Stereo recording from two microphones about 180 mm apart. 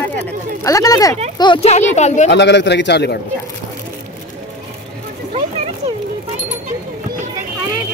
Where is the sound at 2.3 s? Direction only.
75° left (ahead or behind).